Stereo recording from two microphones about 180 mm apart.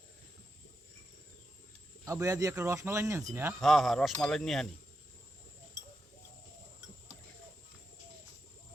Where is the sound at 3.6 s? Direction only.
Centre (ahead or behind).